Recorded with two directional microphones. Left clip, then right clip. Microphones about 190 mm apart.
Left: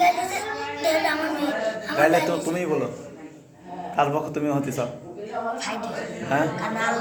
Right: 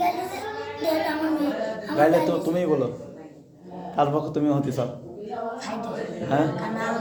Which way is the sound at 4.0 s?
45° right (ahead or behind).